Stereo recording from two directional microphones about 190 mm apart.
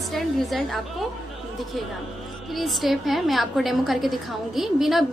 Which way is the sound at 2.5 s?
Centre (ahead or behind).